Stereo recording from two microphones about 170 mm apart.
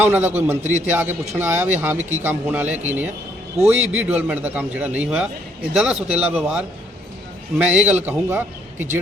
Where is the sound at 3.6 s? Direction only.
40° right (ahead or behind).